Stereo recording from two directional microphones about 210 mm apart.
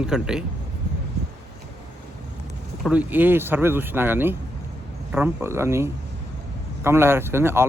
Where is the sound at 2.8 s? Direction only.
5° right (ahead or behind).